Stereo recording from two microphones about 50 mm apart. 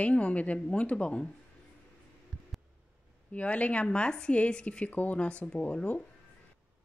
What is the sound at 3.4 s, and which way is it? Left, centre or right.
A woman's voice, left.